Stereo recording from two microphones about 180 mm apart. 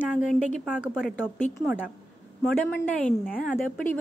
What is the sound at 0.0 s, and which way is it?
A woman's voice, 5° right (ahead or behind).